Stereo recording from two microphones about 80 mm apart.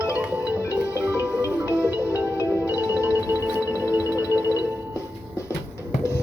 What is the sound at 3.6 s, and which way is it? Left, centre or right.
Music, left.